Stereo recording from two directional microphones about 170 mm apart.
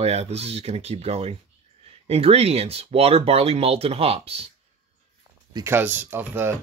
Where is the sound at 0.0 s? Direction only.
35° right (ahead or behind).